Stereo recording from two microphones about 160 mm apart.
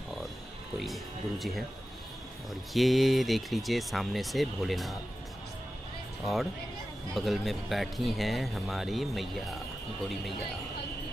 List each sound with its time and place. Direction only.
0.7 s speech: centre (ahead or behind)
2.7 s speech: centre (ahead or behind)
7.2 s speech: centre (ahead or behind)